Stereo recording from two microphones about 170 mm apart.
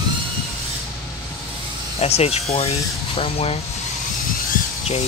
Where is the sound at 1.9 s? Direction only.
35° left (ahead or behind).